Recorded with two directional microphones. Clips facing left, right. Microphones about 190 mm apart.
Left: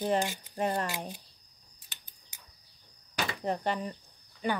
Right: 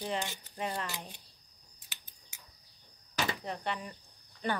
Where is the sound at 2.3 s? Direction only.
35° left (ahead or behind).